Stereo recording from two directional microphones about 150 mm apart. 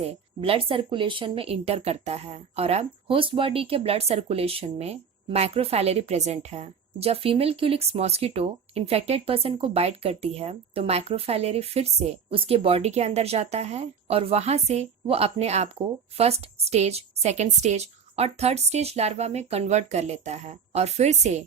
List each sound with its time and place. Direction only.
0.0 s speech: 40° right (ahead or behind)